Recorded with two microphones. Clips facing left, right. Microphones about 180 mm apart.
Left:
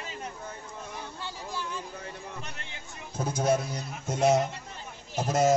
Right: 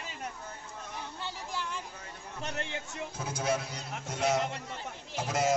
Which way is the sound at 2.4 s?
80° right.